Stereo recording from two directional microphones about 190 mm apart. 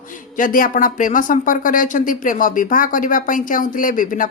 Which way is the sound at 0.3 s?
45° left (ahead or behind).